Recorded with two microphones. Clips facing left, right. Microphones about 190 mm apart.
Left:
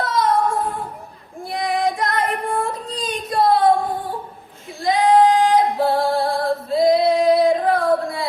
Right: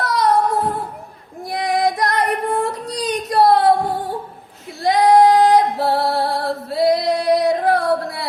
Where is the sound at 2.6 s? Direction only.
75° right (ahead or behind).